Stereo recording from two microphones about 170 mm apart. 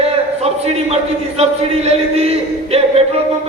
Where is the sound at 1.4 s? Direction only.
40° right (ahead or behind).